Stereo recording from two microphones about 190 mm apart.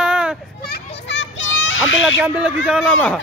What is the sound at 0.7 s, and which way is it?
Children playing, 75° left (ahead or behind).